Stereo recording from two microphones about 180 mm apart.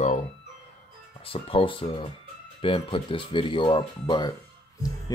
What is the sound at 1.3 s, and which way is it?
Speech, 30° left (ahead or behind).